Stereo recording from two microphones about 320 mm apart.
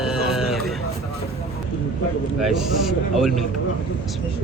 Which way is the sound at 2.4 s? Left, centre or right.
Centre.